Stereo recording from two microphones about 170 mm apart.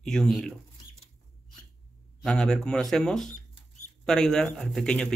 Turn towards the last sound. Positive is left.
turn(degrees=5)  # may be behind; listen again after turning